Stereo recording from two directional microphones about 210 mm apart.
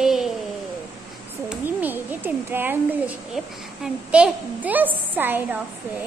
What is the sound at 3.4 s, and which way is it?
A woman's voice, centre (ahead or behind).